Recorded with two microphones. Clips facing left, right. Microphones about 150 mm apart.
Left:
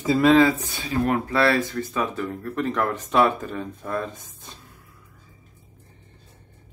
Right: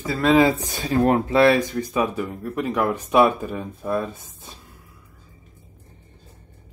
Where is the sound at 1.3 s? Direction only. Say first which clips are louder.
Right 4 dB; 15° right (ahead or behind).